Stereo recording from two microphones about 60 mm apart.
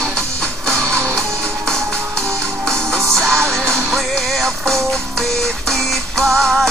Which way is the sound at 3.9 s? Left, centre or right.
Centre.